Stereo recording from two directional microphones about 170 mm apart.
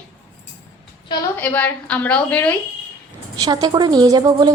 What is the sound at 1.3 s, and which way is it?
A woman's voice, 10° left (ahead or behind).